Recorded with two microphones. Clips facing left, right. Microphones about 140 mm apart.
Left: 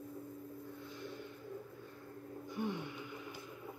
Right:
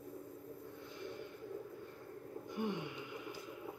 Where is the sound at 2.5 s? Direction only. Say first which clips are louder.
Even; 15° right (ahead or behind).